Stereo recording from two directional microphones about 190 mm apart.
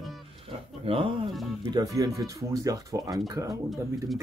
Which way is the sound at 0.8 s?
30° right (ahead or behind).